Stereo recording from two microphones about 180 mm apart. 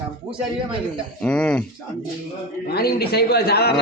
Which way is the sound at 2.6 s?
60° left (ahead or behind).